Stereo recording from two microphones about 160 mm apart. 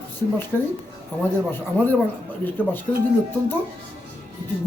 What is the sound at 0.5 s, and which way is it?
Speech, 10° left (ahead or behind).